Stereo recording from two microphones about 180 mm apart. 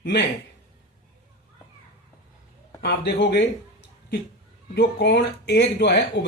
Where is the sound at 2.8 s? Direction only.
70° left (ahead or behind).